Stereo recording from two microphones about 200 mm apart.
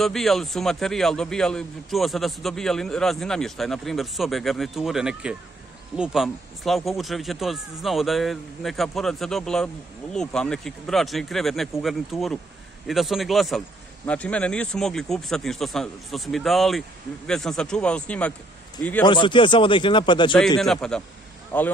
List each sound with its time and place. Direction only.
0.0 s a man's voice: centre (ahead or behind)
19.0 s speech: 25° left (ahead or behind)
20.6 s a man's voice: centre (ahead or behind)